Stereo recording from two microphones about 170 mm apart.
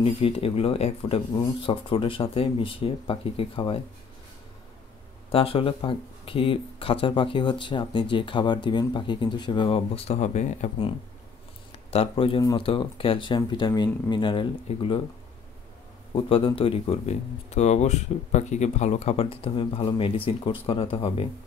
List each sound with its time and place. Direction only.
0.0 s speech: 35° left (ahead or behind)
5.3 s speech: 35° left (ahead or behind)
11.9 s speech: 35° left (ahead or behind)
16.3 s speech: 35° left (ahead or behind)